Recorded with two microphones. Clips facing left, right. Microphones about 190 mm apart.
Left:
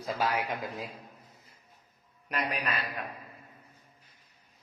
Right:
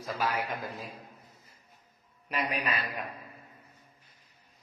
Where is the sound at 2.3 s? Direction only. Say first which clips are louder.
Right 1 dB; centre (ahead or behind).